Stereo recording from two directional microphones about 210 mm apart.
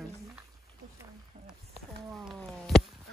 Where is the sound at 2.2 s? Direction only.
Centre (ahead or behind).